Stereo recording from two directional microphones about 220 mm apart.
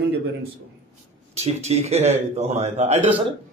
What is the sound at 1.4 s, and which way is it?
A man's voice, 30° right (ahead or behind).